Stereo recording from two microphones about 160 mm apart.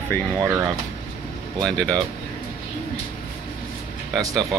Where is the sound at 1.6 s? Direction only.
5° left (ahead or behind).